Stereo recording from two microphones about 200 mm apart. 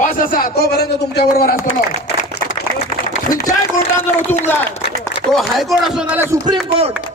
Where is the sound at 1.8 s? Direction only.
40° left (ahead or behind).